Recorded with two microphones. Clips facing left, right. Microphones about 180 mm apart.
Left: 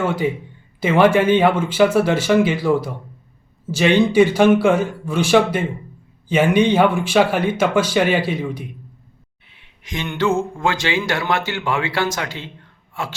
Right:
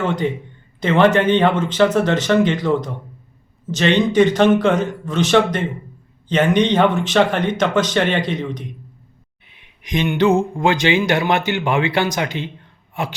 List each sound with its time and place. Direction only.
0.0 s speech: 10° left (ahead or behind)
9.5 s speech: 15° right (ahead or behind)